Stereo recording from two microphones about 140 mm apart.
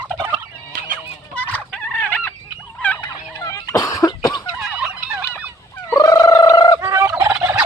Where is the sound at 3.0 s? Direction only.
25° left (ahead or behind).